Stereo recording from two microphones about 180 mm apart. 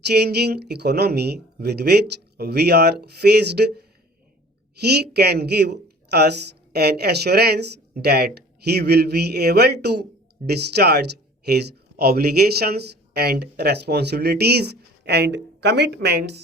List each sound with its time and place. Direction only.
0.1 s speech: 65° right (ahead or behind)